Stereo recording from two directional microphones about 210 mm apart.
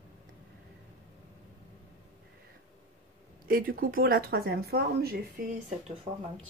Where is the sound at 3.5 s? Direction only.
45° right (ahead or behind).